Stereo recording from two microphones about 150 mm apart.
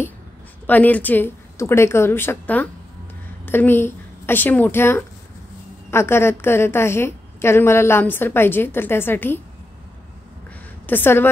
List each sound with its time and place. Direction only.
0.7 s a woman's voice: 10° left (ahead or behind)
10.9 s a woman's voice: 15° left (ahead or behind)